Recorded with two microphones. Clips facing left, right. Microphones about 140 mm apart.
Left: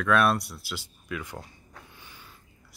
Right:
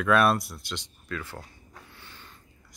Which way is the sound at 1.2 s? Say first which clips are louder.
Left 1 dB; 15° left (ahead or behind).